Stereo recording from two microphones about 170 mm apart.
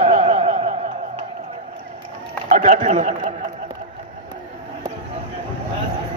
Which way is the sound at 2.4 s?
45° right (ahead or behind).